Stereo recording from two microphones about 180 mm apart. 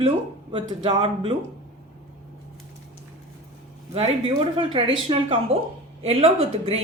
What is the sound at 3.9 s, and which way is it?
Speech, 30° right (ahead or behind).